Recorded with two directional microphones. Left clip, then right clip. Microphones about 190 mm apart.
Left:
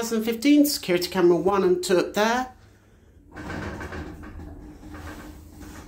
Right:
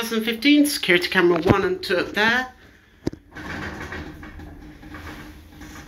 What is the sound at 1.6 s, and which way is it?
Speech, 20° left (ahead or behind).